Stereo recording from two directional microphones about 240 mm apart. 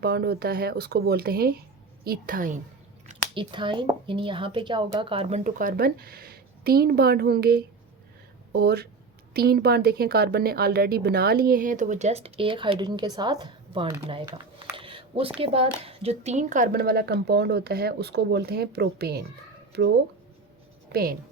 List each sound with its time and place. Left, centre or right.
0.0 s speech: right
3.3 s a woman's voice: centre
14.8 s a sound: right
15.4 s speech: right
20.9 s speech: right